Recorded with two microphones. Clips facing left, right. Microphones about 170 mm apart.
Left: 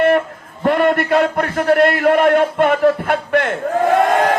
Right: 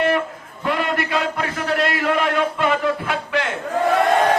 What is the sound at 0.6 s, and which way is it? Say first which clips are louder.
A man's voice: left 7 dB; 55° left (ahead or behind).